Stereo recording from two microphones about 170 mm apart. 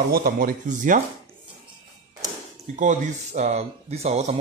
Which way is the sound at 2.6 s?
45° right (ahead or behind).